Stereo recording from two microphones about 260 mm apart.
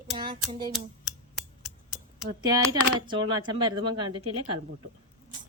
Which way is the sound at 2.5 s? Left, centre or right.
Centre.